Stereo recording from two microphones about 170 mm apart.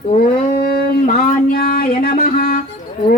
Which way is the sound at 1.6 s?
60° left (ahead or behind).